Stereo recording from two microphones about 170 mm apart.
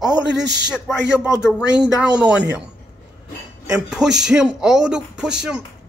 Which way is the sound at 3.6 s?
5° right (ahead or behind).